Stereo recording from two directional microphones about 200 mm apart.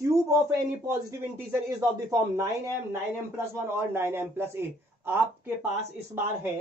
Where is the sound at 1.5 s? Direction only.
15° right (ahead or behind).